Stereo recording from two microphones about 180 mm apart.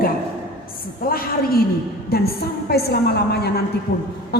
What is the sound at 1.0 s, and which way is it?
A woman's voice, 55° left (ahead or behind).